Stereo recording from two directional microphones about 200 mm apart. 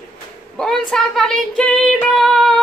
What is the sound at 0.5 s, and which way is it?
Female singing, 5° left (ahead or behind).